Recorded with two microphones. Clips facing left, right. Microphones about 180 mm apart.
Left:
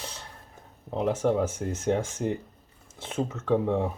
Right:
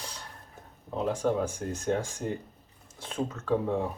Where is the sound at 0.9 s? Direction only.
20° left (ahead or behind).